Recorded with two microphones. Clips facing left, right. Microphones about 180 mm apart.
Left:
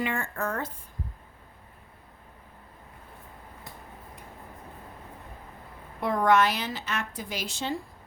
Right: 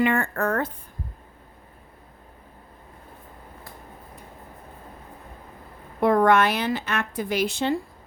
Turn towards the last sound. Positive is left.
turn(degrees=-60)  # may be behind; listen again after turning